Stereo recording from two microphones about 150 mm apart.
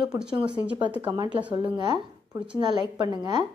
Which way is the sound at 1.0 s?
30° right (ahead or behind).